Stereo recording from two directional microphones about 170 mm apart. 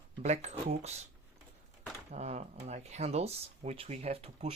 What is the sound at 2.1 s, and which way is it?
Speech, 40° right (ahead or behind).